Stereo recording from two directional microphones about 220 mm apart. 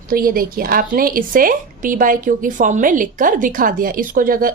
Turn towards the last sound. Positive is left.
turn(degrees=-40)  # may be behind; listen again after turning